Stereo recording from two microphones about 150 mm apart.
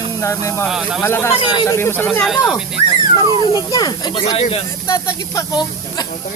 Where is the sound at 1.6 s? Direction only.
15° left (ahead or behind).